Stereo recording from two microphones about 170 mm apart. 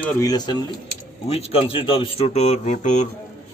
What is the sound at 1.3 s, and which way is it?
Speech, 35° left (ahead or behind).